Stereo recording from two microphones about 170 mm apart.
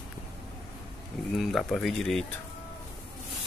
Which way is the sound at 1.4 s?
Centre (ahead or behind).